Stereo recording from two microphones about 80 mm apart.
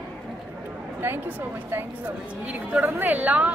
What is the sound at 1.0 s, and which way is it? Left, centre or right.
A woman's voice, right.